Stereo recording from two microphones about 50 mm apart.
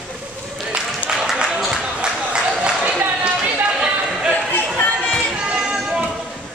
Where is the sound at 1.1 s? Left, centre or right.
Centre.